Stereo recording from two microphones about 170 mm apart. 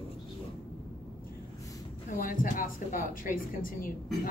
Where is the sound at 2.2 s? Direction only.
55° left (ahead or behind).